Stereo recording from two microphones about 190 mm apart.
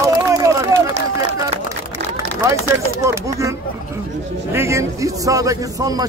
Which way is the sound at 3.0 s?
15° right (ahead or behind).